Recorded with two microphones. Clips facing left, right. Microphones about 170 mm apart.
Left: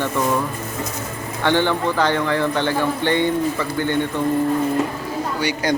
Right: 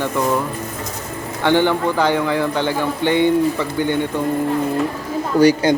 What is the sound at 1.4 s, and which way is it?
A man's voice, 15° right (ahead or behind).